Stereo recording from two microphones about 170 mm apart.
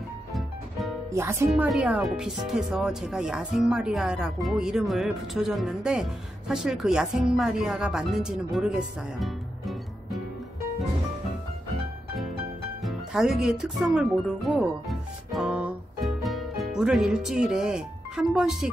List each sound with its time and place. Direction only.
0.3 s music: centre (ahead or behind)
1.1 s speech: 15° right (ahead or behind)
1.5 s speech: 5° right (ahead or behind)
12.8 s speech: 5° right (ahead or behind)